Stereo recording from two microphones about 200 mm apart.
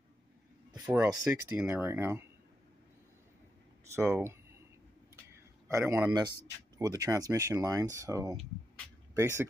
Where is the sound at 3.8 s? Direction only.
10° right (ahead or behind).